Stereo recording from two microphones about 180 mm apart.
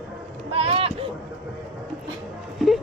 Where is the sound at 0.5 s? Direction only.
35° right (ahead or behind).